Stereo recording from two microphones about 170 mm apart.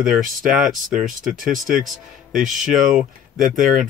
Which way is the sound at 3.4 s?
50° right (ahead or behind).